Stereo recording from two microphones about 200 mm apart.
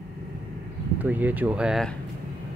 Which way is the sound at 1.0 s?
10° right (ahead or behind).